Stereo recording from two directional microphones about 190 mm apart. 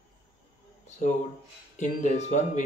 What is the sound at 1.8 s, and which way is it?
Speech, 40° left (ahead or behind).